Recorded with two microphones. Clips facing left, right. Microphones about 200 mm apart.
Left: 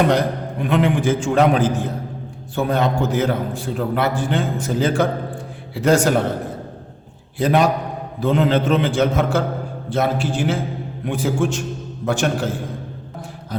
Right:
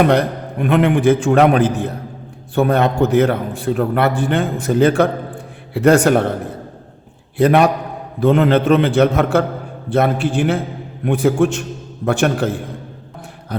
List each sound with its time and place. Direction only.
0.0 s a man's voice: 60° right (ahead or behind)
7.3 s a man's voice: 60° right (ahead or behind)
13.5 s a man's voice: 65° right (ahead or behind)